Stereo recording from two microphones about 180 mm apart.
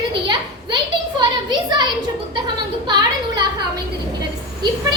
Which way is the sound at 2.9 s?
25° right (ahead or behind).